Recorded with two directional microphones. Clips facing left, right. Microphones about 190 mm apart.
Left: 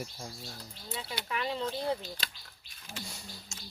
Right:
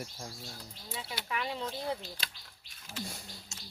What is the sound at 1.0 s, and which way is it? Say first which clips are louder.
Speech: left 1 dB; 5° right (ahead or behind).